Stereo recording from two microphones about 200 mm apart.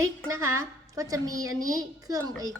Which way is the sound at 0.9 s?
15° right (ahead or behind).